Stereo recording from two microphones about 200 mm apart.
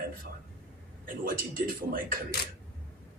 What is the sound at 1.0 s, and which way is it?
A man's voice, 45° right (ahead or behind).